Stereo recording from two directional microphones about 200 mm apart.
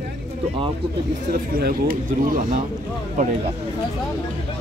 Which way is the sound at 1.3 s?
50° right (ahead or behind).